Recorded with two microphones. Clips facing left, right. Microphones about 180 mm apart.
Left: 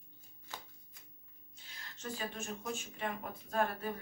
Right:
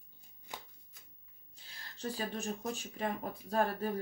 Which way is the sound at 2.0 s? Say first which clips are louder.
Right 4 dB; 35° right (ahead or behind).